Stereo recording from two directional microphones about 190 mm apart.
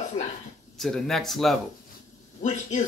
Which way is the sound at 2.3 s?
35° left (ahead or behind).